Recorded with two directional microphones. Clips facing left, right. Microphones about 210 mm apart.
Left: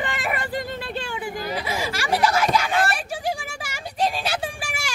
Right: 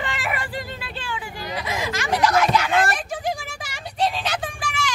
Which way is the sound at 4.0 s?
10° left (ahead or behind).